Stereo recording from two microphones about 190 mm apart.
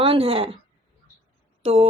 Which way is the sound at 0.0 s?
30° right (ahead or behind).